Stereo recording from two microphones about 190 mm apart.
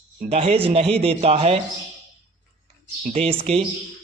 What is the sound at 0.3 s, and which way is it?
A man's voice, 30° right (ahead or behind).